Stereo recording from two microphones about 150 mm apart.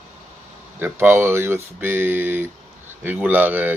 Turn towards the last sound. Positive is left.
turn(degrees=-10)  # may be behind; listen again after turning